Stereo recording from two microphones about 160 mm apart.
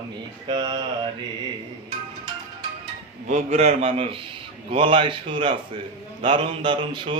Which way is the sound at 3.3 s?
45° right (ahead or behind).